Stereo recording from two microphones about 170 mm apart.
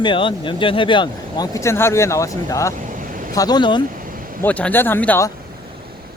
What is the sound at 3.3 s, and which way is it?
Speech, 20° left (ahead or behind).